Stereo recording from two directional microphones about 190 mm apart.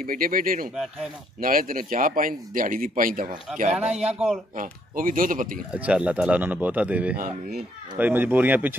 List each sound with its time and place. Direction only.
0.0 s speech: 45° right (ahead or behind)
3.7 s a man's voice: 5° right (ahead or behind)
4.6 s speech: 45° right (ahead or behind)
5.7 s speech: 5° right (ahead or behind)